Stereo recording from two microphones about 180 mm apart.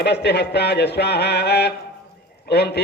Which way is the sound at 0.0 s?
70° left (ahead or behind).